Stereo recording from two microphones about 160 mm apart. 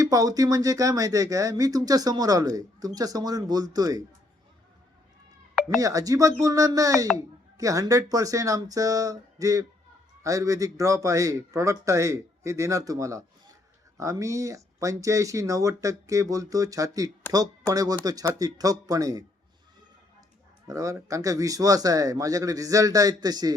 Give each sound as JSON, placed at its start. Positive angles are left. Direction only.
{"t": 0.0, "sound": "speech", "side_deg": -20}
{"t": 5.6, "sound": "speech", "side_deg": -20}
{"t": 20.7, "sound": "speech", "side_deg": -20}